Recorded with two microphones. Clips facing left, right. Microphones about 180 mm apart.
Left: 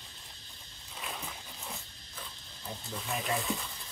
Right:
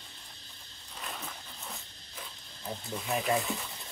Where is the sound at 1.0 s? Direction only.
5° left (ahead or behind).